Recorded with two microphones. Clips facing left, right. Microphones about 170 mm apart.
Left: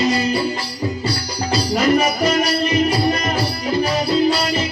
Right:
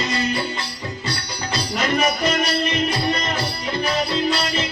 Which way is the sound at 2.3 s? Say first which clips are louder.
Left 4 dB; 35° left (ahead or behind).